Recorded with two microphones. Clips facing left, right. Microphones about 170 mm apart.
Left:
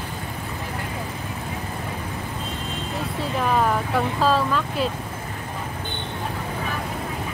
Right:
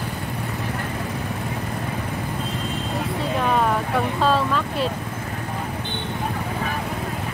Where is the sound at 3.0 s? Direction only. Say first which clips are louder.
Right 1 dB; centre (ahead or behind).